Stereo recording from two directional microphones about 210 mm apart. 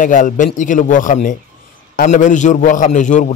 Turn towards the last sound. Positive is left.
turn(degrees=35)  # may be behind; listen again after turning